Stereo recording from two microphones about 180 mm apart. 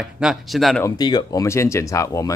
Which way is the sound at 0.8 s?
25° left (ahead or behind).